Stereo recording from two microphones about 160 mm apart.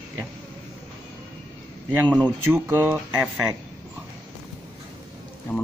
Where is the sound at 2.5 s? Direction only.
15° right (ahead or behind).